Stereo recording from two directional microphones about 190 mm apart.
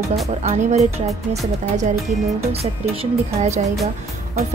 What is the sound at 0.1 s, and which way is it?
Speech, 35° right (ahead or behind).